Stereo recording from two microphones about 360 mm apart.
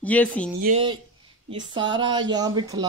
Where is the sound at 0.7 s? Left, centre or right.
Centre.